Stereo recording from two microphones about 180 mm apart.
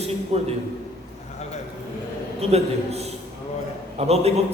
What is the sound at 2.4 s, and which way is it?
A man's voice, 35° right (ahead or behind).